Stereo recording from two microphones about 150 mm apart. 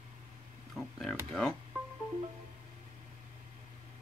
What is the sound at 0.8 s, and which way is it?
Speech, centre (ahead or behind).